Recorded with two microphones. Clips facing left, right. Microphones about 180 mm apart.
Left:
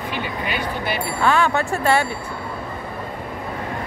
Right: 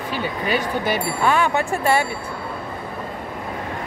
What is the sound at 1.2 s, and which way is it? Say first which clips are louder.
Speech: left 2 dB; 15° right (ahead or behind).